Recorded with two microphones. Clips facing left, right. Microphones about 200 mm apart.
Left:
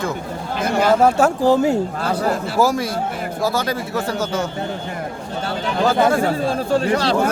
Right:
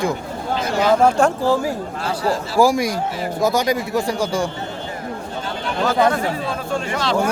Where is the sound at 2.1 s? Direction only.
55° left (ahead or behind).